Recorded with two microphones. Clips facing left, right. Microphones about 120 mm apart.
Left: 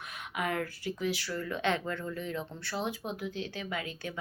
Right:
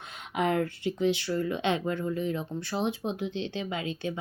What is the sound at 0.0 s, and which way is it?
Speech, 25° right (ahead or behind).